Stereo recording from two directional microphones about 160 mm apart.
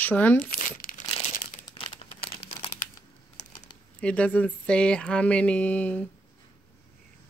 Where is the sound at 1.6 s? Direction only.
35° left (ahead or behind).